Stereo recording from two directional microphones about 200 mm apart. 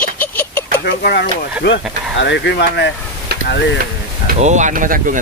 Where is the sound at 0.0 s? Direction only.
10° left (ahead or behind).